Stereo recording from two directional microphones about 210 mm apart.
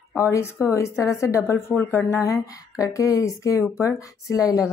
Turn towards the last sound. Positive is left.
turn(degrees=15)  # may be behind; listen again after turning